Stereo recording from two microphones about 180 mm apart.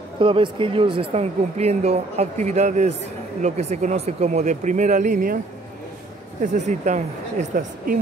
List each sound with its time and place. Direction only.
0.2 s speech: 30° right (ahead or behind); by 5.4 s 45° right (ahead or behind)
6.4 s speech: 45° right (ahead or behind)